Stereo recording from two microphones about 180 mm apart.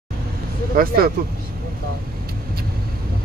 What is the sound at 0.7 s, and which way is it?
Speech, 55° right (ahead or behind).